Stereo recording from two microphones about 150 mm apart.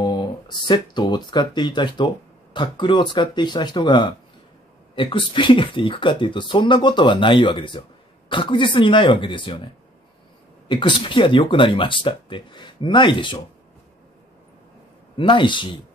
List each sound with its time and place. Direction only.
0.0 s speech: 30° left (ahead or behind)
10.7 s speech: 35° left (ahead or behind)
15.1 s speech: 35° left (ahead or behind)